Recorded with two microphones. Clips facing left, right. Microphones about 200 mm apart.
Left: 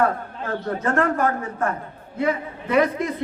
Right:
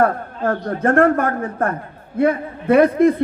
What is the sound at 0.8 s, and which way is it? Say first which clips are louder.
A man's voice: right 7 dB; 55° right (ahead or behind).